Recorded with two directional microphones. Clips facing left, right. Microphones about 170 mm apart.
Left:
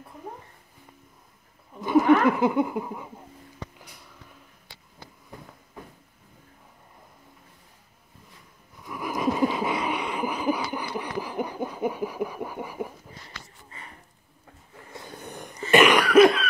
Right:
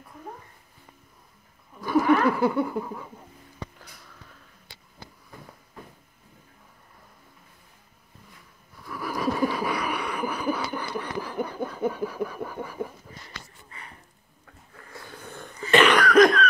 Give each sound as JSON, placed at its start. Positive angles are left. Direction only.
{"t": 1.8, "sound": "laughter", "side_deg": 20}
{"t": 8.8, "sound": "a sound", "side_deg": 20}
{"t": 14.4, "sound": "cough", "side_deg": 20}